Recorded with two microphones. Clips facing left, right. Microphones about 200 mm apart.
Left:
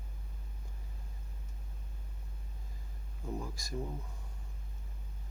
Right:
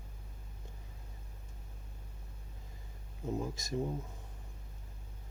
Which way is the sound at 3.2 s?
20° right (ahead or behind).